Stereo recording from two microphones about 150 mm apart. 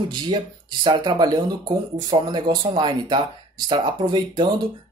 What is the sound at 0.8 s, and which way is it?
Speech, 30° right (ahead or behind).